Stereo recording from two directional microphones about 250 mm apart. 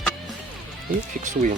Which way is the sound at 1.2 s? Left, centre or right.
Right.